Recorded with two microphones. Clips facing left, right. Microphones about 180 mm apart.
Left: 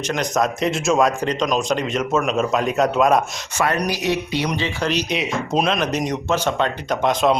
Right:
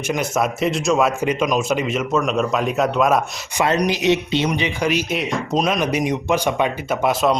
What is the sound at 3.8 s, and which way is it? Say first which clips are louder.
Speech: right 4 dB; 20° right (ahead or behind).